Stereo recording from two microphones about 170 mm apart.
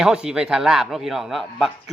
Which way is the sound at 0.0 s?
5° right (ahead or behind).